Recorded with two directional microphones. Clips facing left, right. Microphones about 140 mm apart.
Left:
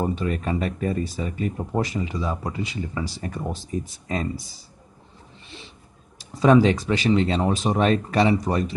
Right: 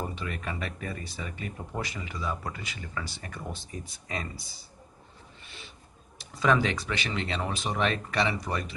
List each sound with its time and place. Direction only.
0.0 s speech: 35° left (ahead or behind)
6.4 s speech: 35° left (ahead or behind)